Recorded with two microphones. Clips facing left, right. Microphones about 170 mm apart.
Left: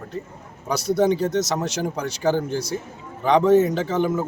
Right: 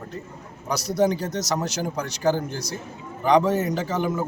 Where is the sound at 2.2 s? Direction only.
Centre (ahead or behind).